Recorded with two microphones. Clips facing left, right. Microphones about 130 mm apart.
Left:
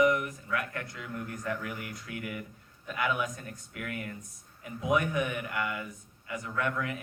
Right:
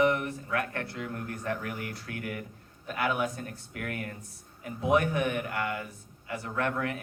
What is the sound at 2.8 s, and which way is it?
Speech, 35° right (ahead or behind).